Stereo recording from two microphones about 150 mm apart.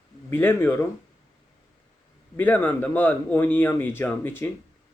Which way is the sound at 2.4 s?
10° left (ahead or behind).